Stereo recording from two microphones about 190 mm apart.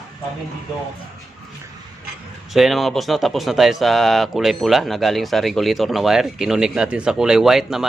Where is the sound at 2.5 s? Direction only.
Centre (ahead or behind).